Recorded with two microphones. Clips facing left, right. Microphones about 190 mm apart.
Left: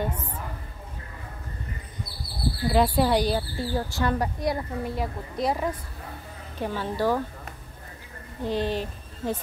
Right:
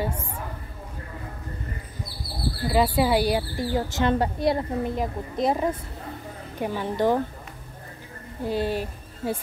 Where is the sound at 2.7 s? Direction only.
5° right (ahead or behind).